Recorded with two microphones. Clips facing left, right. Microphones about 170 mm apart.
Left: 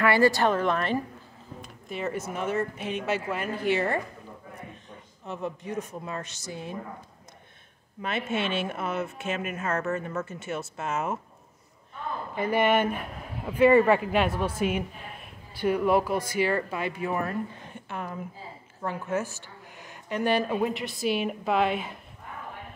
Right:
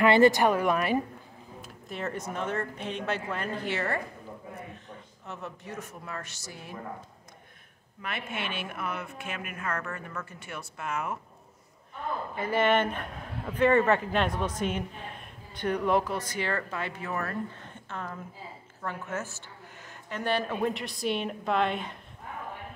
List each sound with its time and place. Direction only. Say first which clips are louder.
0.0 s a woman's voice: right 1 dB; 20° right (ahead or behind)
1.6 s speech: left 3 dB; centre (ahead or behind)
5.2 s a woman's voice: left 7 dB; 15° left (ahead or behind)
8.0 s a woman's voice: left 7 dB; 25° left (ahead or behind)
12.4 s speech: left 2 dB; 15° left (ahead or behind)
20.7 s a woman's voice: left 3 dB; centre (ahead or behind)